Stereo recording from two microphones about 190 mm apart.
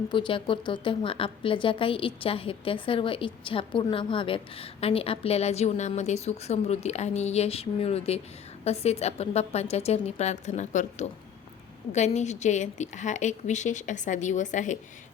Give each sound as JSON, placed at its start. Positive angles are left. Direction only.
{"t": 0.1, "sound": "a woman's voice", "side_deg": 25}